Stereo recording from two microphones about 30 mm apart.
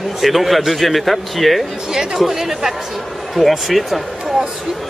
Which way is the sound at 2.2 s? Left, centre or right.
Centre.